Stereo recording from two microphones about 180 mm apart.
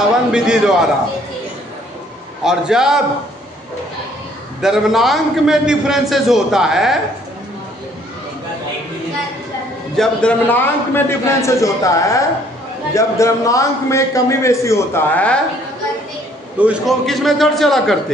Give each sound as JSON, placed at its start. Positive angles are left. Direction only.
{"t": 0.3, "sound": "a man's voice", "side_deg": -5}
{"t": 2.4, "sound": "a man's voice", "side_deg": -5}
{"t": 4.6, "sound": "a man's voice", "side_deg": 0}
{"t": 9.9, "sound": "a man's voice", "side_deg": 10}
{"t": 16.5, "sound": "a man's voice", "side_deg": -5}